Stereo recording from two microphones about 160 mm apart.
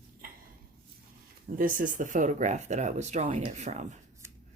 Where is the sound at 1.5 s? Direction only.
55° right (ahead or behind).